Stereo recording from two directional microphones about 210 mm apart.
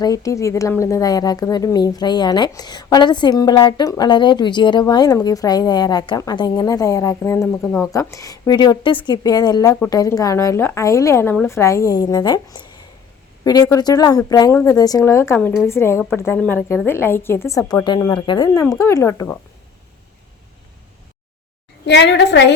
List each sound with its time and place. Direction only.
0.0 s a woman's voice: 15° left (ahead or behind)
21.8 s a woman's voice: 55° left (ahead or behind)